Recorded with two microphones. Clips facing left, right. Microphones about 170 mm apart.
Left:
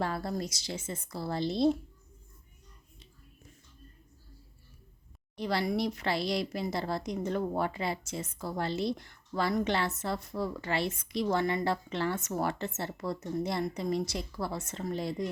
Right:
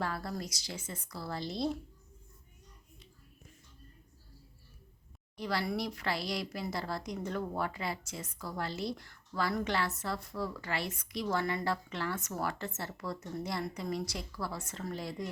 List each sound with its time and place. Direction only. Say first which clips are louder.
0.0 s speech: left 4 dB; 25° left (ahead or behind)
5.4 s speech: left 4 dB; 25° left (ahead or behind)